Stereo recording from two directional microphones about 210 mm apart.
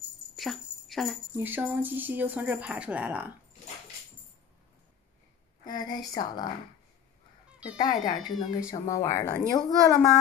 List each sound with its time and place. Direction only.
0.4 s jingle bell: centre (ahead or behind)
1.3 s speech: 10° right (ahead or behind)
5.7 s speech: 20° left (ahead or behind)
7.7 s speech: 20° left (ahead or behind)